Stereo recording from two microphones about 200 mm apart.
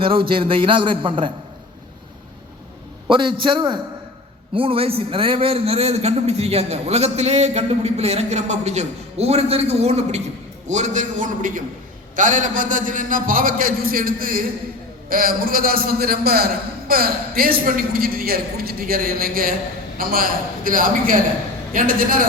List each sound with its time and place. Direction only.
0.0 s a man's voice: 25° right (ahead or behind)
3.1 s a man's voice: 25° right (ahead or behind); by 22.3 s 45° right (ahead or behind)